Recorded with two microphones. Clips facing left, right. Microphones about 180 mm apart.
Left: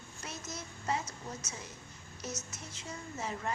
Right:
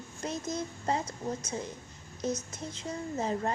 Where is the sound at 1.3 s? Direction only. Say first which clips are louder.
Right 9 dB; 30° right (ahead or behind).